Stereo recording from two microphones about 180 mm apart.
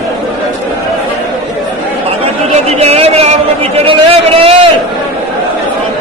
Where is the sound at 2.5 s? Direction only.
35° right (ahead or behind).